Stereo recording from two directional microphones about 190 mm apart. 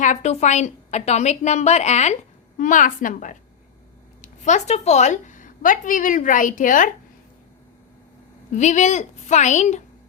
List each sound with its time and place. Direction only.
0.0 s a woman's voice: 40° left (ahead or behind)
8.5 s a woman's voice: 40° left (ahead or behind)